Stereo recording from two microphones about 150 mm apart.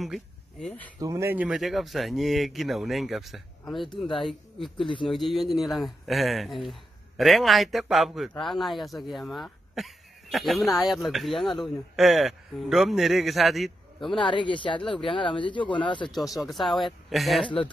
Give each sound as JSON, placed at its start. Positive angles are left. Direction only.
{"t": 0.0, "sound": "speech", "side_deg": 0}
{"t": 0.9, "sound": "speech", "side_deg": -20}
{"t": 1.3, "sound": "speech", "side_deg": -5}
{"t": 4.7, "sound": "speech", "side_deg": 35}
{"t": 5.1, "sound": "speech", "side_deg": 0}
{"t": 14.1, "sound": "speech", "side_deg": 35}
{"t": 16.2, "sound": "speech", "side_deg": 0}